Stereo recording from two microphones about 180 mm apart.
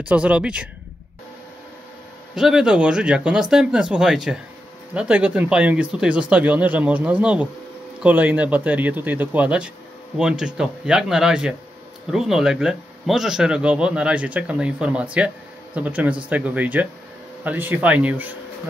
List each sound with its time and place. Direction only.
0.1 s speech: 5° right (ahead or behind)
2.3 s speech: 5° right (ahead or behind)